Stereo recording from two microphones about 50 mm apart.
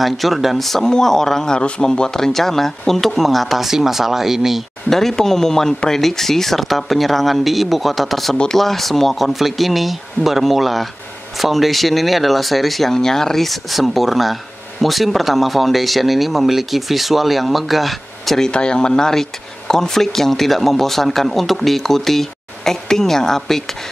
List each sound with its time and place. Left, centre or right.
0.0 s speech: centre
4.8 s speech: centre
18.5 s speech: centre